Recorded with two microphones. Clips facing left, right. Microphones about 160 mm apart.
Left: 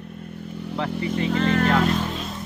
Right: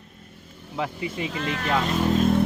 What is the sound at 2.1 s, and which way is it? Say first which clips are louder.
Vehicle: right 11 dB; 50° right (ahead or behind).